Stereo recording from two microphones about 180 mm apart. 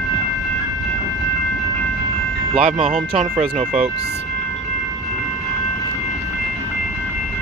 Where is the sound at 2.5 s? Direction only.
30° right (ahead or behind).